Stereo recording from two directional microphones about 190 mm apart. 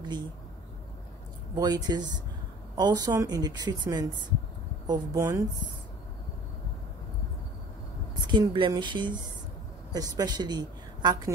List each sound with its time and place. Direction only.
1.5 s a woman's voice: 20° right (ahead or behind)
8.3 s a woman's voice: 25° right (ahead or behind)